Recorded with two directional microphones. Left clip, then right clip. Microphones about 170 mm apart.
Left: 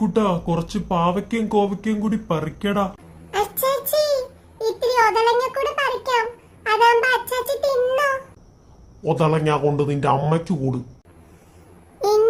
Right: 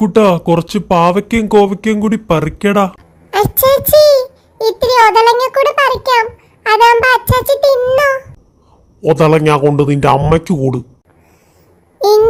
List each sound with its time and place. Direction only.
0.0 s speech: 90° right
3.2 s a child's voice: 35° right (ahead or behind)
9.0 s a man's voice: 75° right (ahead or behind)
11.9 s babbling: 30° right (ahead or behind)